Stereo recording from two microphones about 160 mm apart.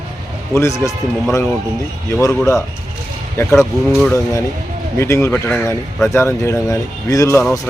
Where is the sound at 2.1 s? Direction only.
20° left (ahead or behind).